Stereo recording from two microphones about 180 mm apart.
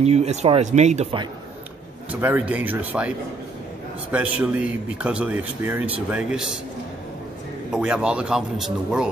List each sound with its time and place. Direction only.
0.0 s speech: 35° right (ahead or behind)
2.0 s a man's voice: 10° right (ahead or behind)
4.1 s a man's voice: 10° right (ahead or behind)
7.7 s speech: 5° right (ahead or behind)